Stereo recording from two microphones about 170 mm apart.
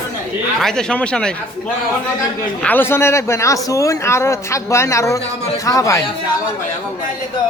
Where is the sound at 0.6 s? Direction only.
5° left (ahead or behind).